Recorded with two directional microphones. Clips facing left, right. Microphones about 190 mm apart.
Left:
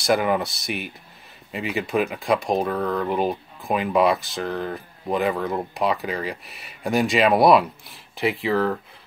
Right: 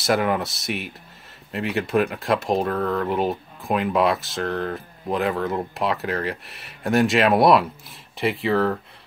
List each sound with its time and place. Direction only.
0.0 s speech: centre (ahead or behind)